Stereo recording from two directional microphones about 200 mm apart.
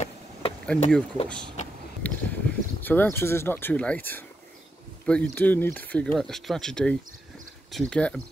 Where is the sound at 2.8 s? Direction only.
10° left (ahead or behind).